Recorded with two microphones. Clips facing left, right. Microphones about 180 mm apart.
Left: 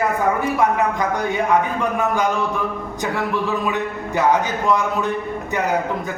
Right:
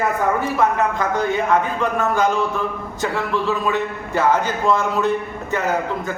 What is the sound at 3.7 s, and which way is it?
A man's voice, 15° left (ahead or behind).